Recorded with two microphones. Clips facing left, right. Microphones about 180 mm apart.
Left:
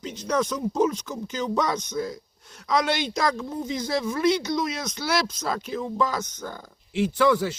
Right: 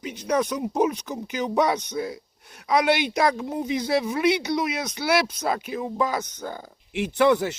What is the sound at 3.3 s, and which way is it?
Speech, 15° right (ahead or behind).